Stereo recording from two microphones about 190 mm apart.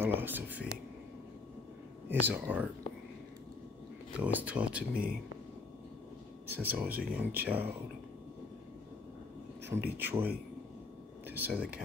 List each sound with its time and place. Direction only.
0.0 s speech: 10° right (ahead or behind)
2.0 s speech: 10° right (ahead or behind)
4.2 s speech: 10° right (ahead or behind)
6.4 s speech: 10° right (ahead or behind)
9.7 s speech: 10° right (ahead or behind)